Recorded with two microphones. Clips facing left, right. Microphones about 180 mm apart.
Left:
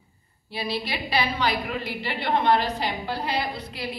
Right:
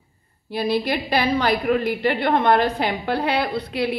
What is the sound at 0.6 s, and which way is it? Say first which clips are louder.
A woman's voice: right 8 dB; 50° right (ahead or behind).